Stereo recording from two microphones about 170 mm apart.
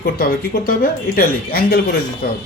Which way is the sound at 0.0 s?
60° left (ahead or behind).